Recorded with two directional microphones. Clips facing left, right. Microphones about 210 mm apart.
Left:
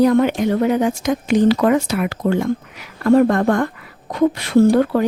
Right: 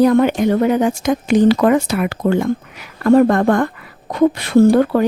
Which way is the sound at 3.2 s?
65° right (ahead or behind).